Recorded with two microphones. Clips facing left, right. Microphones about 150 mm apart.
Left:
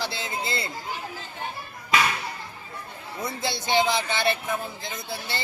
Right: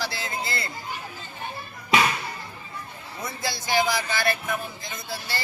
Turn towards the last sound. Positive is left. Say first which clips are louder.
# even
turn(degrees=20)  # may be behind; listen again after turning